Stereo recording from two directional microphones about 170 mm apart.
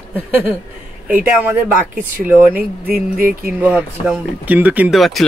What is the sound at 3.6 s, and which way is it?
Speech, 5° right (ahead or behind).